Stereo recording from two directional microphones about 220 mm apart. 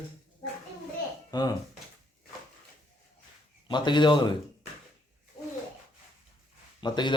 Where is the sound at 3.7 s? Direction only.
20° left (ahead or behind).